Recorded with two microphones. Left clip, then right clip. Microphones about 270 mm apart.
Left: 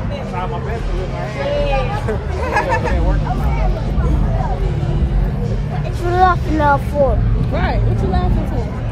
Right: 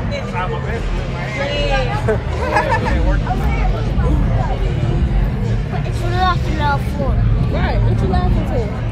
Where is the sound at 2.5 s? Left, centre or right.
Centre.